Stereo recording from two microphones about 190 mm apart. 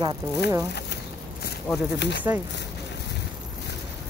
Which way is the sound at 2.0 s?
65° left (ahead or behind).